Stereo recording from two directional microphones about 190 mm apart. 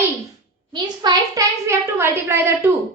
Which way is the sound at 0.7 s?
20° right (ahead or behind).